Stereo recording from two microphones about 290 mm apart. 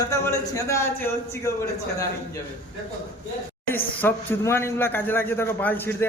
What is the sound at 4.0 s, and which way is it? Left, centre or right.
A man's voice, centre.